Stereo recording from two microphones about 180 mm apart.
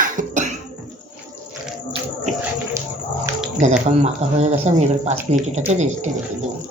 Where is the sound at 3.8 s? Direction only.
35° right (ahead or behind).